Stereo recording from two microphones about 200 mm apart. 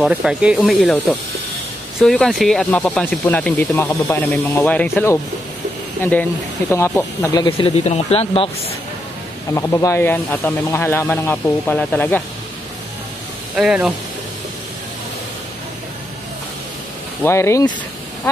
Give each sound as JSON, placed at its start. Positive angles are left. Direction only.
{"t": 0.0, "sound": "speech", "side_deg": -5}
{"t": 6.7, "sound": "speech", "side_deg": 15}
{"t": 9.5, "sound": "speech", "side_deg": 15}
{"t": 13.6, "sound": "speech", "side_deg": -5}
{"t": 17.2, "sound": "speech", "side_deg": 15}